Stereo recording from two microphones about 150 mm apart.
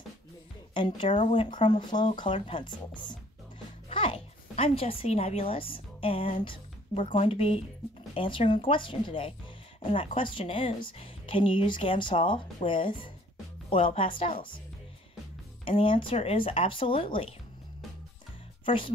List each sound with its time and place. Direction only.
0.7 s a woman's voice: 35° left (ahead or behind)
15.6 s a woman's voice: 35° left (ahead or behind)
18.7 s a woman's voice: 35° left (ahead or behind)